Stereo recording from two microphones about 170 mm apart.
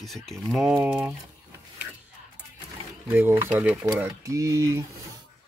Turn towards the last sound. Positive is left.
turn(degrees=-20)  # may be behind; listen again after turning